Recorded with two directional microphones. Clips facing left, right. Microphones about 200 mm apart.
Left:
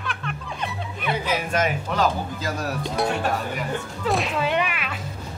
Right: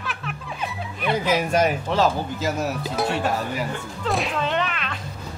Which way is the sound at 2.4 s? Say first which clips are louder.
Right 3 dB; centre (ahead or behind).